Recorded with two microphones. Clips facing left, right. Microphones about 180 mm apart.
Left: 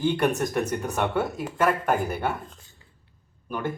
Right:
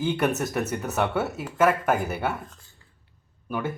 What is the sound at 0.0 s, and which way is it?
Speech, 5° right (ahead or behind).